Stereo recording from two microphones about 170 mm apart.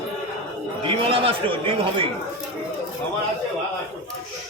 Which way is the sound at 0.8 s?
30° right (ahead or behind).